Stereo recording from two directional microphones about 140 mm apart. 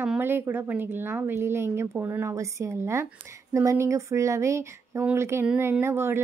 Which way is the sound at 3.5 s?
20° right (ahead or behind).